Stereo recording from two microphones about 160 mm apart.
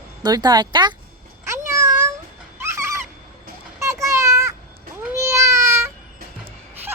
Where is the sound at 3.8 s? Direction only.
20° right (ahead or behind).